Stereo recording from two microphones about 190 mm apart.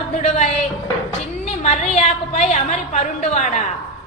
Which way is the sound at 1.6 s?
35° left (ahead or behind).